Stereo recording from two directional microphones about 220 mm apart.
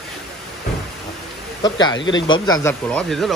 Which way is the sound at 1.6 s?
20° left (ahead or behind).